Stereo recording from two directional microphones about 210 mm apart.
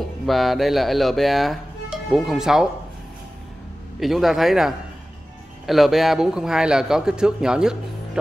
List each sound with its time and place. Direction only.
0.3 s a man's voice: centre (ahead or behind)
4.0 s a man's voice: centre (ahead or behind)